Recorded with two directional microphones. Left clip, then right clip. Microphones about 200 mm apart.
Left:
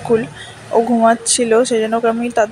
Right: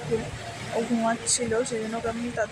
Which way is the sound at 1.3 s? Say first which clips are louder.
Left 13 dB; 40° left (ahead or behind).